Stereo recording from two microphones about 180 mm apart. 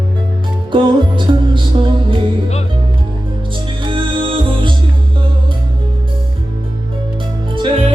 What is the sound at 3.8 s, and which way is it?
Music, 30° right (ahead or behind).